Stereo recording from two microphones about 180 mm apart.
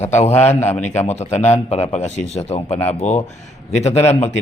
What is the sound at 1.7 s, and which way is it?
A man's voice, 40° left (ahead or behind).